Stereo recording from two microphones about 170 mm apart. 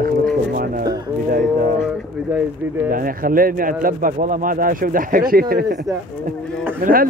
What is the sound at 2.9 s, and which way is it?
Speech, 55° right (ahead or behind).